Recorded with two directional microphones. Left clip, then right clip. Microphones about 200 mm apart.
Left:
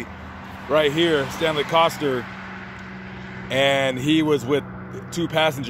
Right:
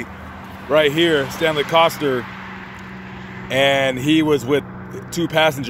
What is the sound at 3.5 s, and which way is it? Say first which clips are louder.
Speech: right 3 dB; 5° right (ahead or behind).